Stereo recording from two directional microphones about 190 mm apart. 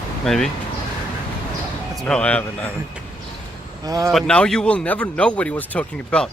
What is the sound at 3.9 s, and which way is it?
Speech, 20° right (ahead or behind).